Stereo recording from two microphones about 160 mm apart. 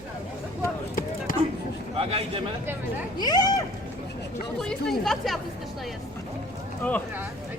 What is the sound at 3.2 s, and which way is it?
Speech, 25° left (ahead or behind).